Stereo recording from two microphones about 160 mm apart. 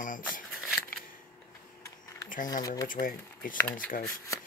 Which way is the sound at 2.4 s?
25° left (ahead or behind).